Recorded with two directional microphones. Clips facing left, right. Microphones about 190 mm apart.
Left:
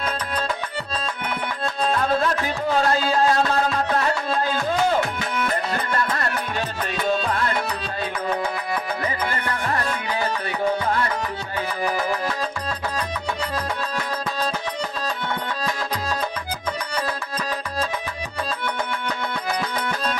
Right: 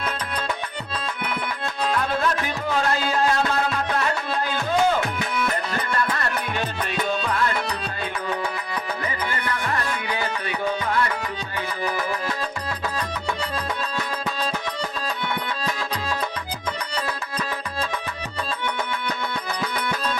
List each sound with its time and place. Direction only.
1.8 s music: 35° left (ahead or behind)
9.0 s music: 35° left (ahead or behind)